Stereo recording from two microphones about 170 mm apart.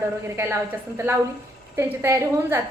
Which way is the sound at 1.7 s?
15° right (ahead or behind).